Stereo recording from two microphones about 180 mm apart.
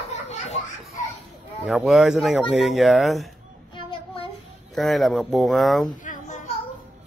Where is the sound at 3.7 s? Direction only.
30° left (ahead or behind).